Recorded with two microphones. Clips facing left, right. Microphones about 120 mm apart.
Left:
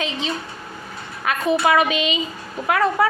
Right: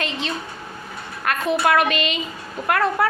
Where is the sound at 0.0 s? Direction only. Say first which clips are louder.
Left 1 dB; centre (ahead or behind).